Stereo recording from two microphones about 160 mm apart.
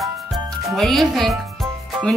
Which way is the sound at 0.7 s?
Centre (ahead or behind).